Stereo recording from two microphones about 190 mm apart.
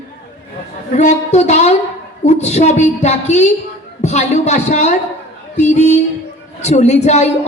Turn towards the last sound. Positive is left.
turn(degrees=35)  # may be behind; listen again after turning